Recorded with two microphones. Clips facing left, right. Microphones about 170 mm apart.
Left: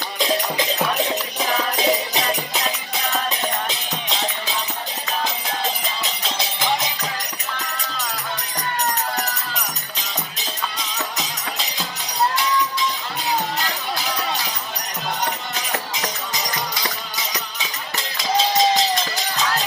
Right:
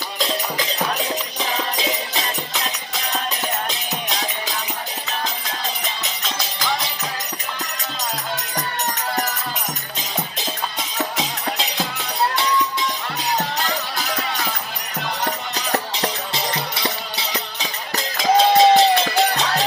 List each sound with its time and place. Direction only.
6.3 s music: 25° left (ahead or behind)
14.1 s music: 55° right (ahead or behind)
15.7 s music: 30° right (ahead or behind)
18.1 s music: 50° right (ahead or behind)